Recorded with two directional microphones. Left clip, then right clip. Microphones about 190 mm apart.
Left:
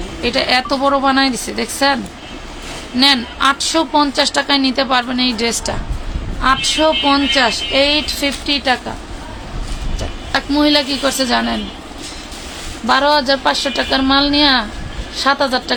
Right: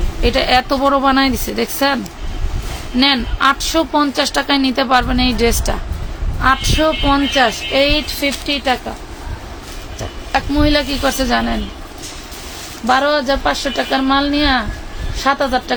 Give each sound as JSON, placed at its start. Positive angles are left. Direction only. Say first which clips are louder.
{"t": 0.2, "sound": "a woman's voice", "louder": "right 1 dB", "side_deg": -25}
{"t": 3.0, "sound": "a woman's voice", "louder": "left 1 dB", "side_deg": -20}
{"t": 10.0, "sound": "a woman's voice", "louder": "right 1 dB", "side_deg": -5}
{"t": 12.9, "sound": "speech", "louder": "left 1 dB", "side_deg": -5}